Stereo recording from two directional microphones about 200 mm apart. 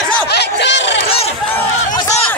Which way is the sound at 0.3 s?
55° left (ahead or behind).